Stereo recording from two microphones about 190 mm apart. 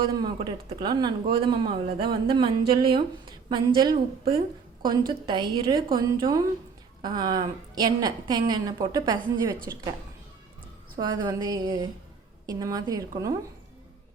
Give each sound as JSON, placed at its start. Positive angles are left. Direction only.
{"t": 0.2, "sound": "a woman's voice", "side_deg": -25}
{"t": 10.9, "sound": "a woman's voice", "side_deg": -20}